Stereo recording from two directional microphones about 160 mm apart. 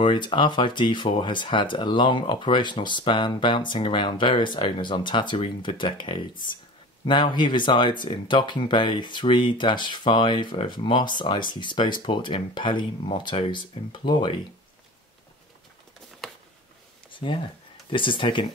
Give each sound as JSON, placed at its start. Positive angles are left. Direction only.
{"t": 0.0, "sound": "speech", "side_deg": 30}
{"t": 17.1, "sound": "a sound", "side_deg": 30}
{"t": 17.8, "sound": "speech", "side_deg": 30}